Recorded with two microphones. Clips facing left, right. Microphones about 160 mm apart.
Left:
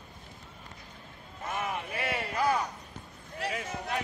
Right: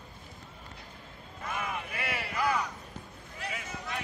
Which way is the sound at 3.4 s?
55° left (ahead or behind).